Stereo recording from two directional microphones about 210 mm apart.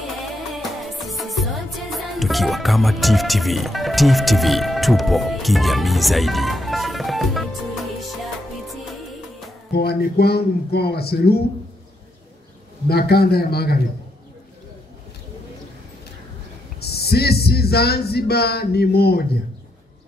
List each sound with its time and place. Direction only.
0.0 s music: centre (ahead or behind)
9.7 s speech: 50° left (ahead or behind)
12.8 s speech: 50° left (ahead or behind)
16.8 s speech: 50° left (ahead or behind)